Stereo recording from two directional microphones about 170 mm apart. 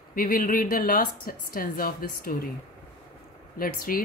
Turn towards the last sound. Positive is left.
turn(degrees=55)  # may be behind; listen again after turning